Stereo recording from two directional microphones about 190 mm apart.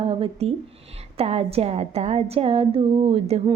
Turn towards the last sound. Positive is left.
turn(degrees=-30)  # may be behind; listen again after turning